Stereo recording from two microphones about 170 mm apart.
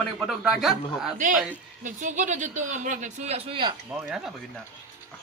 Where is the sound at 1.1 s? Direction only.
50° right (ahead or behind); by 3.7 s 35° right (ahead or behind).